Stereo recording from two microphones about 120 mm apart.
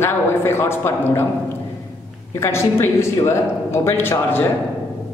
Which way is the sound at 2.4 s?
20° left (ahead or behind).